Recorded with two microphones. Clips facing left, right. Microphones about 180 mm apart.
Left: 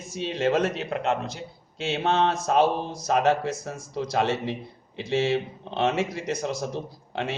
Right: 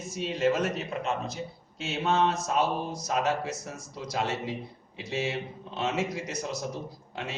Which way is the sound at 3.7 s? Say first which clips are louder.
Left 7 dB; 55° left (ahead or behind).